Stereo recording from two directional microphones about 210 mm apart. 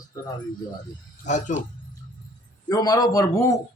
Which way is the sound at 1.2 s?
35° left (ahead or behind).